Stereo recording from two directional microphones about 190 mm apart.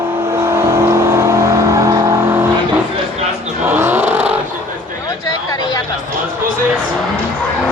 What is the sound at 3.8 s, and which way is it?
Vehicle, 10° right (ahead or behind).